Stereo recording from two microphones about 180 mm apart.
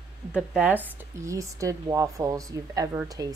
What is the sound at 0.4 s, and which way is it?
Speech, 5° right (ahead or behind).